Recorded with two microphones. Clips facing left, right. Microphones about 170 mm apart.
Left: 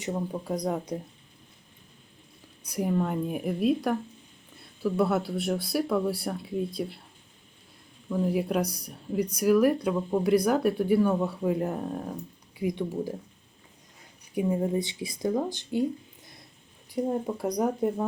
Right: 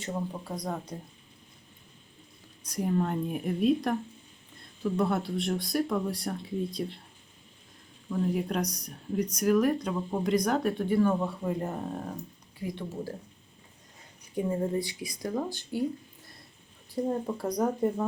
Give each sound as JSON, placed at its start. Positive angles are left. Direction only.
{"t": 0.0, "sound": "speech", "side_deg": 15}
{"t": 2.6, "sound": "speech", "side_deg": 5}
{"t": 8.1, "sound": "speech", "side_deg": 5}
{"t": 12.5, "sound": "speech", "side_deg": 15}
{"t": 14.3, "sound": "speech", "side_deg": 10}
{"t": 14.8, "sound": "speech", "side_deg": 25}